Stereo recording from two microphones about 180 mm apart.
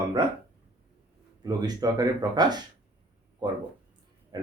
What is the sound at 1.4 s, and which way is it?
Speech, 20° right (ahead or behind).